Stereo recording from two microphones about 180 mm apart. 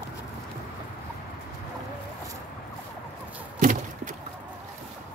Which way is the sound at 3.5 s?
45° right (ahead or behind).